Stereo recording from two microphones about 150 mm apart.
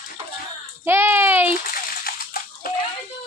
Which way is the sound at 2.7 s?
75° left (ahead or behind).